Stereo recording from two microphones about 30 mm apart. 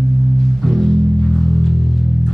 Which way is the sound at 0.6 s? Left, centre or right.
Centre.